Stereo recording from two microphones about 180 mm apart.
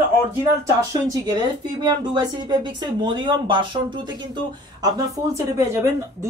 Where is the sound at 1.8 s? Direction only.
25° right (ahead or behind).